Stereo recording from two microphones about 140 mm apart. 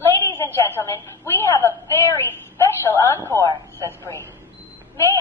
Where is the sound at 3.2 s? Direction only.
20° left (ahead or behind).